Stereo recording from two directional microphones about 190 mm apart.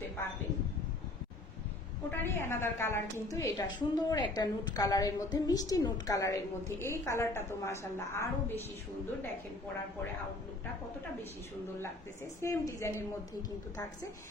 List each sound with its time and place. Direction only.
2.0 s a woman's voice: 10° left (ahead or behind)
12.4 s a woman's voice: 15° left (ahead or behind)